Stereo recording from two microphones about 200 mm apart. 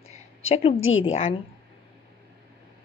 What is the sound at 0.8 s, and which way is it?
Speech, 80° left.